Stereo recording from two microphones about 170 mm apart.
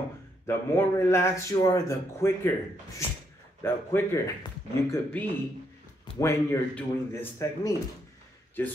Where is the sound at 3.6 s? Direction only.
15° left (ahead or behind).